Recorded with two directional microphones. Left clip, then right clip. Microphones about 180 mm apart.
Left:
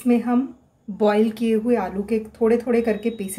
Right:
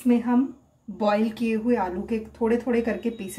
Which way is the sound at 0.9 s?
35° left (ahead or behind).